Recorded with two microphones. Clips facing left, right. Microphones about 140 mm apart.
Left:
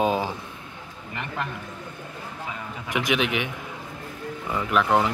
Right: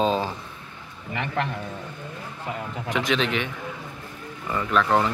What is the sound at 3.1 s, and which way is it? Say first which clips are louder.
Speech: left 1 dB; 15° left (ahead or behind).